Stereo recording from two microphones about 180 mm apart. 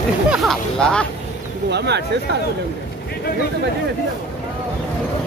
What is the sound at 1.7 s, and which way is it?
Speech, 70° right (ahead or behind).